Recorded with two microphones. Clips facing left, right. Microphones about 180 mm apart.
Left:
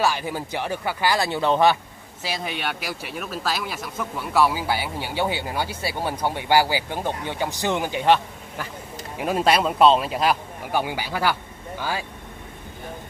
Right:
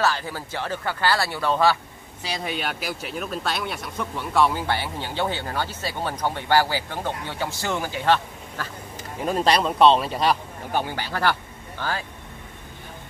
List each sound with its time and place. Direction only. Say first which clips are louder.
0.0 s a man's voice: left 1 dB; 15° left (ahead or behind)
2.2 s a man's voice: even; centre (ahead or behind); by 8.6 s 15° left (ahead or behind)
9.2 s a man's voice: left 1 dB; 5° left (ahead or behind)